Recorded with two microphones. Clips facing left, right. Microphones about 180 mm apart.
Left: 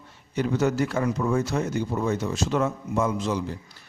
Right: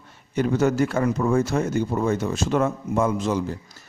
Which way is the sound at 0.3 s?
50° right (ahead or behind).